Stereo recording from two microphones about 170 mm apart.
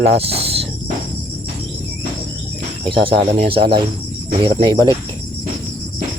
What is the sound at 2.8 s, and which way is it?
Speech, 30° right (ahead or behind).